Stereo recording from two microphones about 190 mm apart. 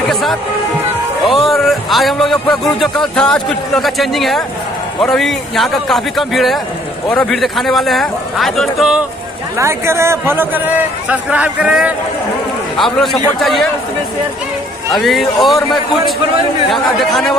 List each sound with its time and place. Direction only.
0.1 s music: centre (ahead or behind)
1.2 s a man's voice: centre (ahead or behind)
9.6 s a man's voice: 15° right (ahead or behind)
14.9 s a man's voice: centre (ahead or behind)